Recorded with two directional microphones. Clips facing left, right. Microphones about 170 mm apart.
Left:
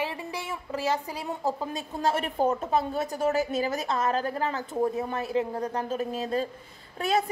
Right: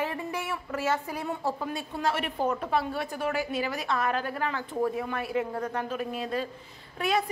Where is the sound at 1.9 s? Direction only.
40° left (ahead or behind).